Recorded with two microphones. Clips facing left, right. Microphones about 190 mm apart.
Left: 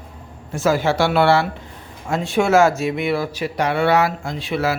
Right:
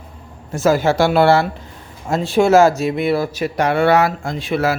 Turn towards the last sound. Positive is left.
turn(degrees=-50)  # may be behind; listen again after turning